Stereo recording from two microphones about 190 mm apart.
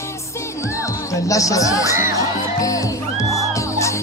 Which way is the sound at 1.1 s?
15° left (ahead or behind).